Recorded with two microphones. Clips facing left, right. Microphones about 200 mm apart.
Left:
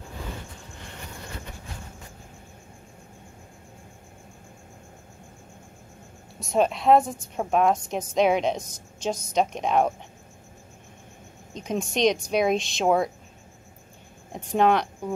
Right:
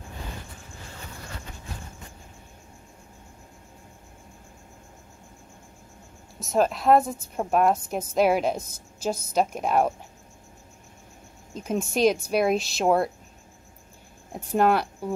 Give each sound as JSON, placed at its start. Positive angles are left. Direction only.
{"t": 6.4, "sound": "a woman's voice", "side_deg": 0}
{"t": 11.5, "sound": "a woman's voice", "side_deg": -5}
{"t": 14.3, "sound": "speech", "side_deg": -5}